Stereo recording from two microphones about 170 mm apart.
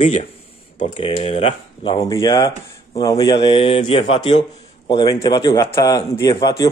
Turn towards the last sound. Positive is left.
turn(degrees=20)  # may be behind; listen again after turning